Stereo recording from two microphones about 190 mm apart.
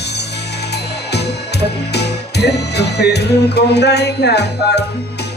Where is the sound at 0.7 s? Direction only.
60° left (ahead or behind).